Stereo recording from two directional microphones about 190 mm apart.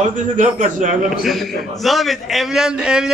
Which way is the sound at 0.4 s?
45° right (ahead or behind).